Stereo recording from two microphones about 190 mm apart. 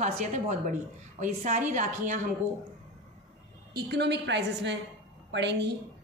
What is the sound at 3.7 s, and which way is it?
A woman's voice, 60° right (ahead or behind).